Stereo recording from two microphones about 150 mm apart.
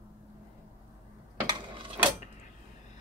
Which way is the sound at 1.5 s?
35° right (ahead or behind).